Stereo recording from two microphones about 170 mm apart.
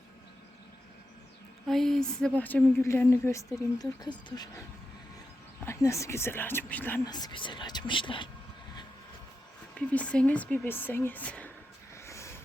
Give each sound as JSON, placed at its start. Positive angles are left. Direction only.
{"t": 1.6, "sound": "a woman's voice", "side_deg": 0}
{"t": 5.6, "sound": "a woman's voice", "side_deg": 15}
{"t": 7.0, "sound": "speech", "side_deg": 25}
{"t": 9.7, "sound": "a woman's voice", "side_deg": 5}
{"t": 12.0, "sound": "a sound", "side_deg": 15}